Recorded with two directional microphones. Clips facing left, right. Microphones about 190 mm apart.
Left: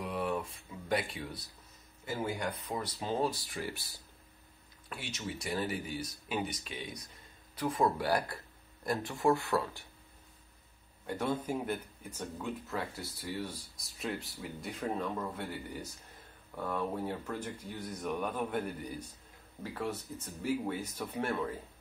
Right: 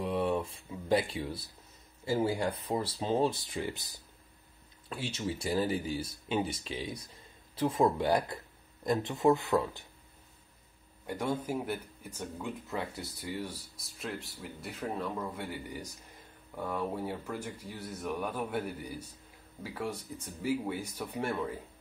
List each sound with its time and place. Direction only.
0.0 s a sound: 30° right (ahead or behind)
2.0 s speech: 30° right (ahead or behind)
4.8 s speech: 30° right (ahead or behind)
11.1 s speech: 10° right (ahead or behind)